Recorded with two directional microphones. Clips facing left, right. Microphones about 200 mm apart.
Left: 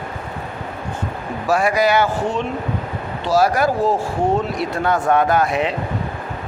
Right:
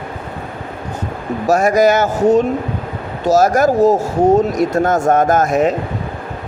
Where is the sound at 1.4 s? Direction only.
45° right (ahead or behind).